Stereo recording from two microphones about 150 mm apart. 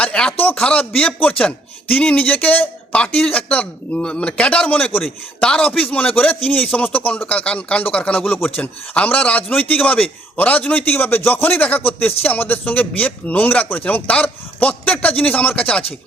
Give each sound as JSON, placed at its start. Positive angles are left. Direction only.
{"t": 0.0, "sound": "a man's voice", "side_deg": 5}